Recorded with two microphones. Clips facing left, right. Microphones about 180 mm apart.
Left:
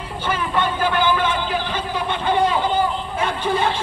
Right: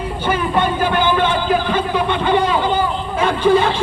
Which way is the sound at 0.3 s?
15° right (ahead or behind).